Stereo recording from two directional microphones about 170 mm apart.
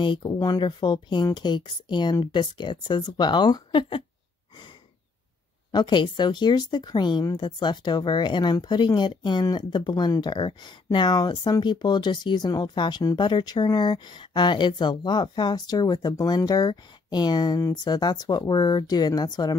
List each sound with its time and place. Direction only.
0.0 s speech: 25° left (ahead or behind)
5.7 s speech: 25° left (ahead or behind)